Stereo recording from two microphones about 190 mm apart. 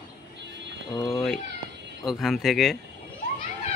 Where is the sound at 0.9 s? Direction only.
20° left (ahead or behind).